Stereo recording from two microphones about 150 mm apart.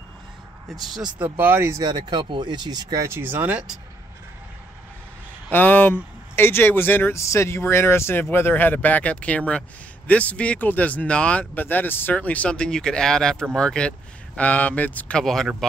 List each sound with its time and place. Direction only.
0.9 s speech: 30° right (ahead or behind)
1.4 s speech: 15° right (ahead or behind)
5.5 s a sound: 10° left (ahead or behind)
6.3 s speech: 15° left (ahead or behind)